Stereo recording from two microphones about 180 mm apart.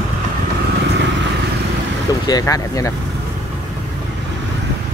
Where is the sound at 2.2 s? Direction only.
20° left (ahead or behind).